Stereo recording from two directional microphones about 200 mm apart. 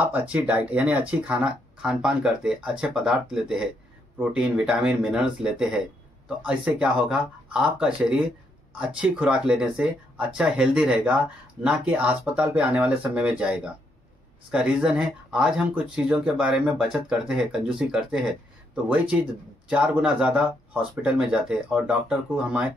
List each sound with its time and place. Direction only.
0.1 s speech: 10° right (ahead or behind)
19.7 s speech: 5° right (ahead or behind)